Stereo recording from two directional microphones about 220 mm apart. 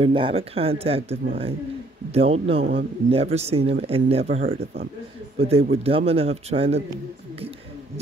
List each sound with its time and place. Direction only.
0.0 s speech: 25° right (ahead or behind)
5.4 s speech: 25° right (ahead or behind)